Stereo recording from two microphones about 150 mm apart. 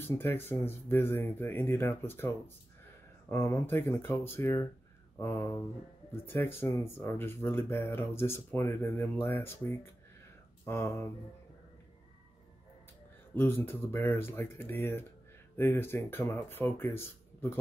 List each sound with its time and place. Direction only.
0.0 s speech: 15° left (ahead or behind)
13.3 s speech: 15° left (ahead or behind)